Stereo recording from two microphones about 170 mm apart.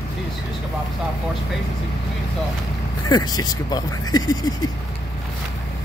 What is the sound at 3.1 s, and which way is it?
Speech, 25° left (ahead or behind).